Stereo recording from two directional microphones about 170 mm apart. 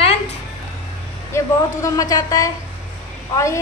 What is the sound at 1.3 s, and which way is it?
A woman's voice, 20° left (ahead or behind).